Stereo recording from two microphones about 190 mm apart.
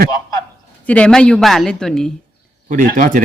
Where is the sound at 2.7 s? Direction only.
45° right (ahead or behind).